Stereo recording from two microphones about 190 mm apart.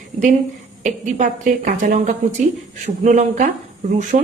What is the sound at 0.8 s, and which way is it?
Speech, 40° right (ahead or behind).